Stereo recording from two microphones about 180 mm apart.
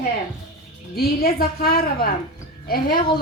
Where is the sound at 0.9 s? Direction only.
55° left (ahead or behind).